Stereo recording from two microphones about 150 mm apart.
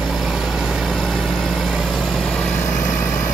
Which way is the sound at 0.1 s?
Centre (ahead or behind).